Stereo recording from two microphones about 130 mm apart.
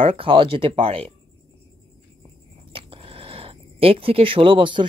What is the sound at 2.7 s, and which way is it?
Speech, 45° right (ahead or behind).